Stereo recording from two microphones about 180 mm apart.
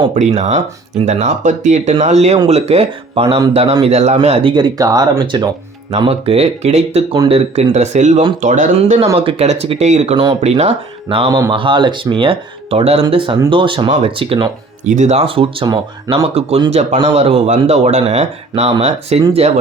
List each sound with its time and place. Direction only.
0.1 s speech: 40° right (ahead or behind)
14.8 s speech: 40° right (ahead or behind)